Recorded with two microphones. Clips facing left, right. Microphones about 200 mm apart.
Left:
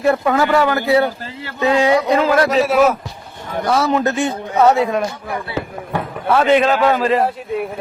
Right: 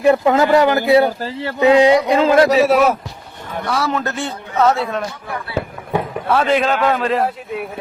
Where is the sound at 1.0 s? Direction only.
35° right (ahead or behind).